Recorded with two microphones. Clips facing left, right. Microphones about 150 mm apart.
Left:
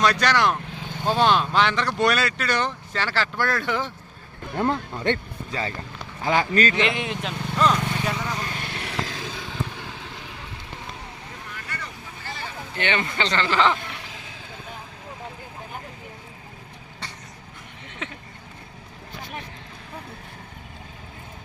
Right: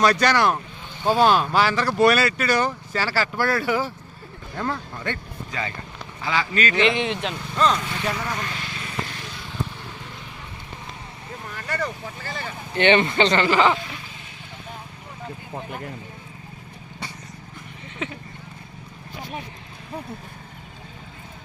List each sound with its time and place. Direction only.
0.0 s speech: 10° right (ahead or behind)
4.5 s speech: 20° left (ahead or behind)
5.5 s speech: 30° left (ahead or behind)
6.2 s speech: 45° left (ahead or behind)
6.7 s speech: centre (ahead or behind)
8.5 s vehicle: 60° left (ahead or behind); by 9.1 s 85° left
11.5 s vehicle: 40° right (ahead or behind)
12.7 s speech: 20° right (ahead or behind)
18.0 s vehicle: 5° right (ahead or behind)